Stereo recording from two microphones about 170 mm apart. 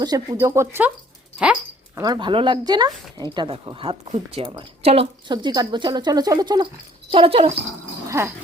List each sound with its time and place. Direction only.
0.0 s speech: 25° right (ahead or behind)
2.0 s speech: 25° right (ahead or behind)
8.0 s dog: 15° right (ahead or behind)